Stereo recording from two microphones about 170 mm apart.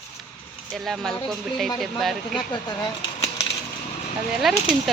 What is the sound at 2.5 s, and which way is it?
Speech, 25° left (ahead or behind).